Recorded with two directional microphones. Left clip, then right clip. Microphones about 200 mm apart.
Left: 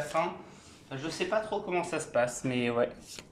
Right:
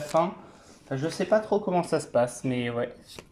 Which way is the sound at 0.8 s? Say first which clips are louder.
Right 6 dB; 35° right (ahead or behind).